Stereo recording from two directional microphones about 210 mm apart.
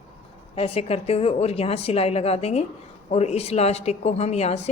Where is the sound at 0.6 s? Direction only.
25° left (ahead or behind).